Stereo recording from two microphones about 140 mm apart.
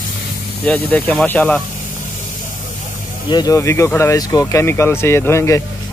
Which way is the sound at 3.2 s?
30° left (ahead or behind).